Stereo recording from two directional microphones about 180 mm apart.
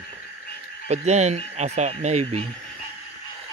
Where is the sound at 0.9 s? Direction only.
40° right (ahead or behind).